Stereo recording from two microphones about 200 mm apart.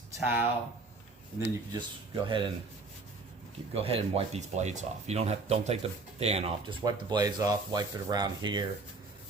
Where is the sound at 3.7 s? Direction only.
30° right (ahead or behind).